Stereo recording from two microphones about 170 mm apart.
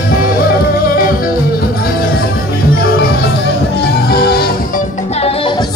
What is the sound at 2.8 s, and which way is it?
Music, 65° left (ahead or behind).